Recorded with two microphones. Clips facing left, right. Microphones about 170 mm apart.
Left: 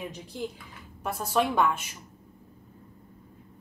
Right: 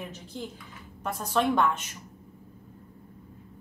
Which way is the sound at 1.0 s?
5° left (ahead or behind).